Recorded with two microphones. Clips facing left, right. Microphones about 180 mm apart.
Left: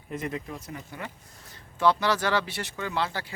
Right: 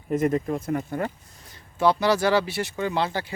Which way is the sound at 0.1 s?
45° right (ahead or behind).